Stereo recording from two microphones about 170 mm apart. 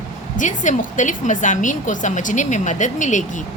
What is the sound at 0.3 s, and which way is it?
A woman's voice, 45° left (ahead or behind).